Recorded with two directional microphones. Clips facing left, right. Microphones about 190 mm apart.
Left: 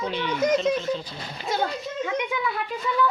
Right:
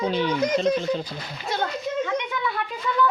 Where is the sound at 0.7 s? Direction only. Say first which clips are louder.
Right 2 dB; 5° left (ahead or behind).